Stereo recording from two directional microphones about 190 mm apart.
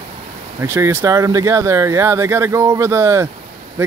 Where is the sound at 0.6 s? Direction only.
15° right (ahead or behind).